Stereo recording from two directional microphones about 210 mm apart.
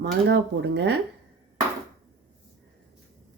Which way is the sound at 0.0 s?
55° right (ahead or behind).